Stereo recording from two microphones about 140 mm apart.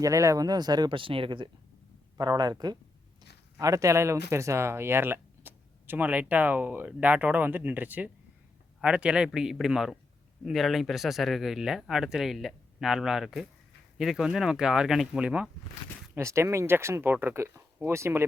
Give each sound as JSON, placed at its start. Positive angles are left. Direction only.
{"t": 0.0, "sound": "speech", "side_deg": -20}
{"t": 16.1, "sound": "speech", "side_deg": -20}